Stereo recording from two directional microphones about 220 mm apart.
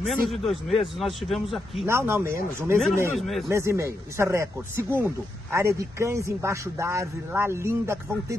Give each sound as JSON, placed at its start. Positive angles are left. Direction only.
{"t": 0.0, "sound": "speech", "side_deg": 0}
{"t": 1.9, "sound": "a man's voice", "side_deg": -10}
{"t": 3.2, "sound": "speech", "side_deg": 0}
{"t": 3.4, "sound": "a man's voice", "side_deg": -10}